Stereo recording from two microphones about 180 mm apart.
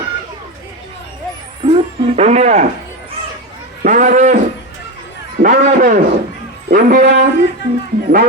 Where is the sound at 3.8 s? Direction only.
45° right (ahead or behind).